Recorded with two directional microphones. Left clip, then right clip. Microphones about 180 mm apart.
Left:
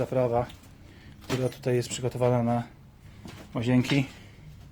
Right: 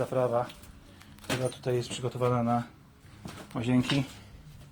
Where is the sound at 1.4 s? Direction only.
45° left (ahead or behind).